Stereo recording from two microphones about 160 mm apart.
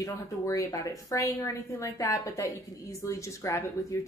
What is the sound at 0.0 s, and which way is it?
Speech, 20° left (ahead or behind).